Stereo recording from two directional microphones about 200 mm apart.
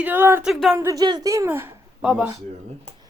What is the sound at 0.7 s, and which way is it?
Speech, 15° right (ahead or behind).